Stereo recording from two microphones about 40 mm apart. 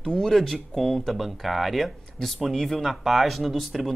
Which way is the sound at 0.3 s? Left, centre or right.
Centre.